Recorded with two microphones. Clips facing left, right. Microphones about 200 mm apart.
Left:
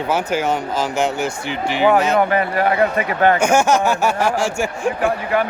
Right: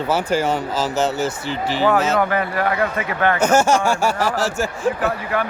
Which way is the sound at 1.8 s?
15° left (ahead or behind).